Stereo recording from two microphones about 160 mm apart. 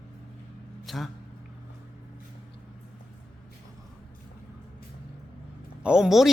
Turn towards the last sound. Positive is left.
turn(degrees=-5)  # may be behind; listen again after turning